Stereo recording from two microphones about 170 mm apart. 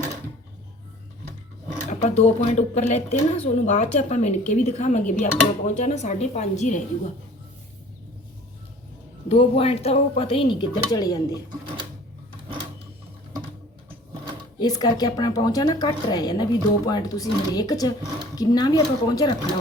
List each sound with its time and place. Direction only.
1.9 s speech: 40° left (ahead or behind)
9.3 s speech: 35° left (ahead or behind)
14.6 s a woman's voice: 25° left (ahead or behind)